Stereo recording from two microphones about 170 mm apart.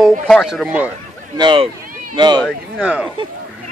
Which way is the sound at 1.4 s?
30° right (ahead or behind).